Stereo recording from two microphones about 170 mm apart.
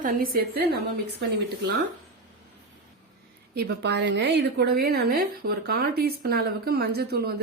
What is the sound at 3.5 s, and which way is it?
A woman's voice, 75° right (ahead or behind).